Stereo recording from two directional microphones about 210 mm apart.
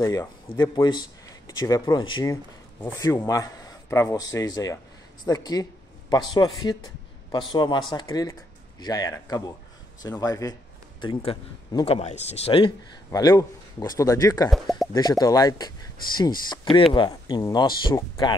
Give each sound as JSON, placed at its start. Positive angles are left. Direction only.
{"t": 0.0, "sound": "a man's voice", "side_deg": 15}